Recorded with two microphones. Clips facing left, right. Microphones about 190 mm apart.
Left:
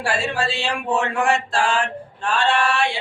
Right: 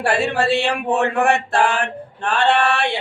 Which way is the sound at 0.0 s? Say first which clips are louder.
Right 4 dB; 60° right (ahead or behind).